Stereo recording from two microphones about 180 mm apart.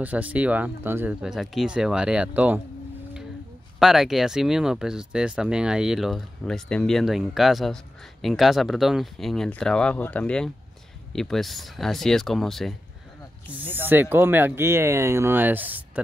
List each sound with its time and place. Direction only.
0.0 s speech: 10° right (ahead or behind)
3.8 s speech: centre (ahead or behind)
13.5 s speech: 10° right (ahead or behind)